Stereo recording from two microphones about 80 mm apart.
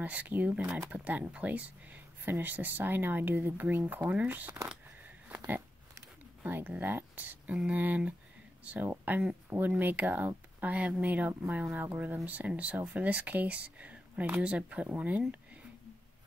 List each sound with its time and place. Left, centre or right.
0.0 s speech: centre
6.4 s speech: right
8.9 s a sound: right
9.5 s speech: right